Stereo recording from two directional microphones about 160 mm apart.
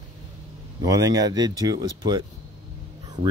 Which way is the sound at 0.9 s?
20° right (ahead or behind).